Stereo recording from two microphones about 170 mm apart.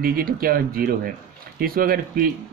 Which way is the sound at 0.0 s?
60° right (ahead or behind).